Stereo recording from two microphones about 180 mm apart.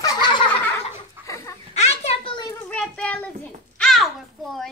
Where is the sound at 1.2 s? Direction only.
15° left (ahead or behind).